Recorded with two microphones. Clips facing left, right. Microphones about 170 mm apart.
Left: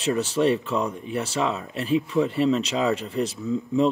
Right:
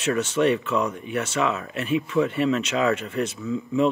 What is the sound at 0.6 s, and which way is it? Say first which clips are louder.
Speech: right 1 dB; 35° left (ahead or behind).